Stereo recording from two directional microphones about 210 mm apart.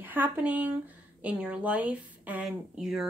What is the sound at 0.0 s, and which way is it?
Speech, 10° right (ahead or behind).